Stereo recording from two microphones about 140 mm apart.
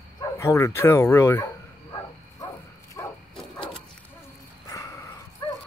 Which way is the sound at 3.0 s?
20° left (ahead or behind).